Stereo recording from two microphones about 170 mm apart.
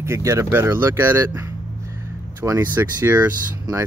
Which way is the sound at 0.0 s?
15° right (ahead or behind).